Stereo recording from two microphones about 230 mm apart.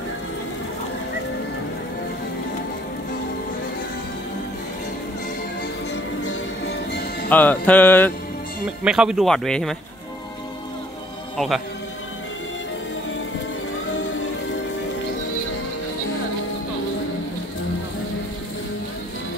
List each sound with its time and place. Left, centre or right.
6.2 s music: left
7.2 s music: centre
8.6 s speech: centre
11.3 s speech: centre